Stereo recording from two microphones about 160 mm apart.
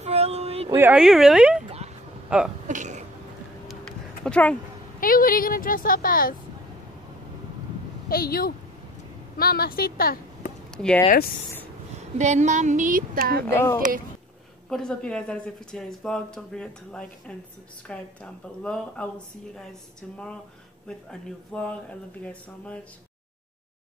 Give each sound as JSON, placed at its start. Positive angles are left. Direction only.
{"t": 0.0, "sound": "a sound", "side_deg": -40}
{"t": 0.7, "sound": "speech", "side_deg": -10}
{"t": 2.2, "sound": "sneeze", "side_deg": -5}
{"t": 2.7, "sound": "cough", "side_deg": -50}
{"t": 3.6, "sound": "a sound", "side_deg": 5}
{"t": 5.0, "sound": "a woman's voice", "side_deg": 60}
{"t": 8.1, "sound": "speech", "side_deg": 70}
{"t": 12.2, "sound": "a woman's voice", "side_deg": -45}
{"t": 13.5, "sound": "a woman's voice", "side_deg": 15}
{"t": 14.7, "sound": "a woman's voice", "side_deg": 5}